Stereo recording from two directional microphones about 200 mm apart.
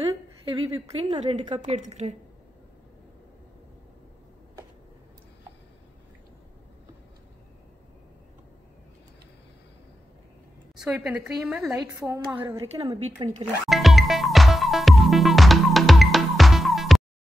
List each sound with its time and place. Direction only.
0.5 s speech: 25° right (ahead or behind)
1.8 s a woman's voice: 35° right (ahead or behind)
10.8 s a woman's voice: 5° right (ahead or behind)
11.9 s speech: 15° right (ahead or behind)
13.7 s music: centre (ahead or behind)